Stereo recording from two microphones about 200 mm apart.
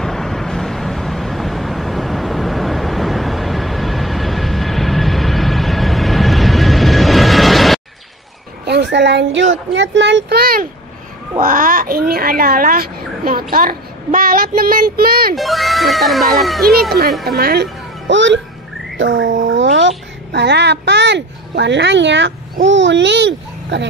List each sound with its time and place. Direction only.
0.0 s vehicle: centre (ahead or behind)
8.6 s a child's voice: 60° right (ahead or behind)
15.3 s speech: centre (ahead or behind)
17.2 s a child's voice: 50° right (ahead or behind)
18.9 s a sound: 70° right (ahead or behind)
20.3 s speech: 60° right (ahead or behind)